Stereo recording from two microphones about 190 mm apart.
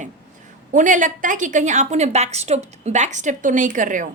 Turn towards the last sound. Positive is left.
turn(degrees=-45)  # may be behind; listen again after turning